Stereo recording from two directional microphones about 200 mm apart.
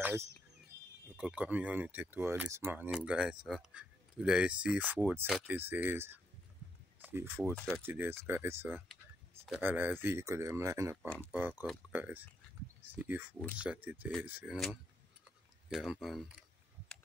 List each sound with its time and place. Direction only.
0.0 s bird: 10° right (ahead or behind)
1.1 s speech: 5° right (ahead or behind)
7.5 s speech: 5° left (ahead or behind)
7.8 s speech: 10° right (ahead or behind)
11.0 s speech: 5° left (ahead or behind)
11.3 s speech: 10° right (ahead or behind)